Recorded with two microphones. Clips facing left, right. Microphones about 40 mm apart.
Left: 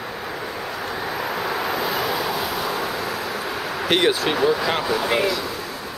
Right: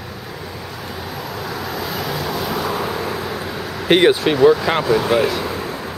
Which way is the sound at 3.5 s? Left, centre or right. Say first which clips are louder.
Left 1 dB; centre.